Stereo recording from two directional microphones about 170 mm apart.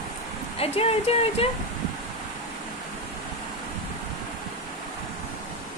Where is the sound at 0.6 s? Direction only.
35° left (ahead or behind).